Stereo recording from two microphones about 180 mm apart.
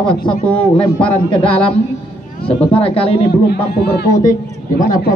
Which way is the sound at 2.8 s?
30° left (ahead or behind).